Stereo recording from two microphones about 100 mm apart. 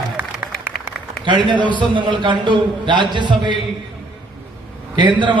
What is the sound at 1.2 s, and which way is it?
A man's voice, 50° right (ahead or behind).